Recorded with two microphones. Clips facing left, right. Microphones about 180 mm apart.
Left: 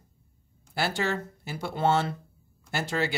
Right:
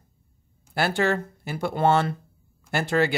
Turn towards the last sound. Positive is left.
turn(degrees=-55)  # may be behind; listen again after turning